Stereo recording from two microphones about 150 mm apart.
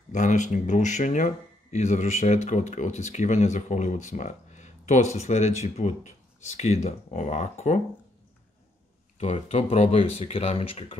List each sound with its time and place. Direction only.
0.1 s speech: 55° left (ahead or behind)
9.2 s speech: 45° left (ahead or behind)